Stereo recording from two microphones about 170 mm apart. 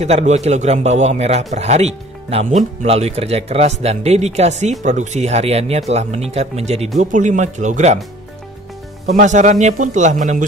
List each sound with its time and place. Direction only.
0.0 s speech: 40° right (ahead or behind)
9.0 s speech: 45° right (ahead or behind)